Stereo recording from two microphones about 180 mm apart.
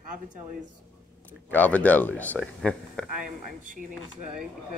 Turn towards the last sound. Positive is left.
turn(degrees=-45)  # may be behind; listen again after turning